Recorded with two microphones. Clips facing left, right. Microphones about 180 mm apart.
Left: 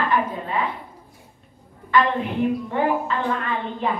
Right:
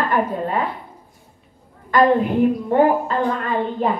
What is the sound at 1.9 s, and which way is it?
A woman's voice, 45° right (ahead or behind).